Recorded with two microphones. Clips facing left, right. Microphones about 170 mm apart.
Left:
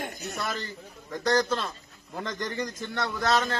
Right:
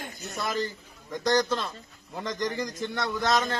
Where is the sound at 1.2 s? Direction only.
10° right (ahead or behind).